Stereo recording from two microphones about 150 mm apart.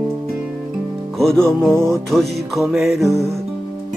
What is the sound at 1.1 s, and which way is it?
Music, 5° left (ahead or behind).